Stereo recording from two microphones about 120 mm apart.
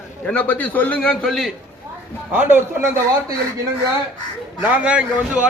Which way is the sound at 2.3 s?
15° right (ahead or behind).